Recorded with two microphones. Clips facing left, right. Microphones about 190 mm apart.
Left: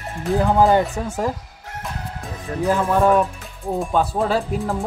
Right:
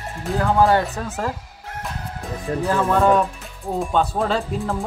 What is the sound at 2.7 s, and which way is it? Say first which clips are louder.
Speech: left 1 dB; 10° left (ahead or behind).